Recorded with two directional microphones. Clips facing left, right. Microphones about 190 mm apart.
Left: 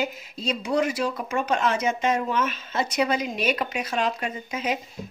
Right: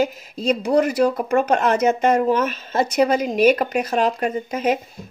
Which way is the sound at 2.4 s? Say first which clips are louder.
Right 5 dB; 45° right (ahead or behind).